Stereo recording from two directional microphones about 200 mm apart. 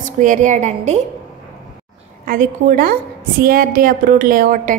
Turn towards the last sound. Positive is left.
turn(degrees=-40)  # may be behind; listen again after turning